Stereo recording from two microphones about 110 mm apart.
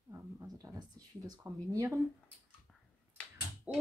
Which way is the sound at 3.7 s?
10° right (ahead or behind).